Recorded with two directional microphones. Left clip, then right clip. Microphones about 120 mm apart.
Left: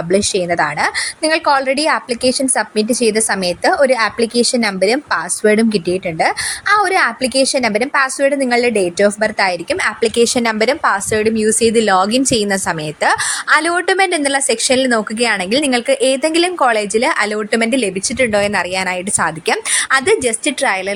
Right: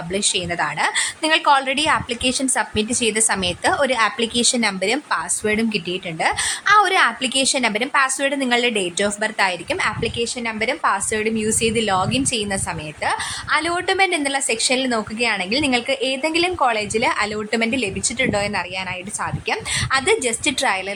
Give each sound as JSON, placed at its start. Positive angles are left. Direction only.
{"t": 0.1, "sound": "a woman's voice", "side_deg": 30}
{"t": 1.2, "sound": "a woman's voice", "side_deg": 10}
{"t": 10.2, "sound": "a woman's voice", "side_deg": 85}
{"t": 10.6, "sound": "a woman's voice", "side_deg": 45}
{"t": 18.7, "sound": "a woman's voice", "side_deg": 55}
{"t": 19.7, "sound": "a woman's voice", "side_deg": 35}
{"t": 20.2, "sound": "a woman's voice", "side_deg": 20}